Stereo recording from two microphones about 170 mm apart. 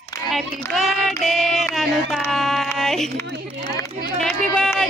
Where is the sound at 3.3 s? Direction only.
60° right (ahead or behind).